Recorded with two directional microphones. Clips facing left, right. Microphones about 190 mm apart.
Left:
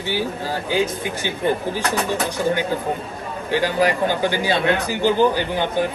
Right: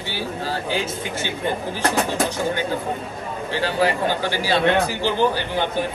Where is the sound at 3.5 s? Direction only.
15° left (ahead or behind).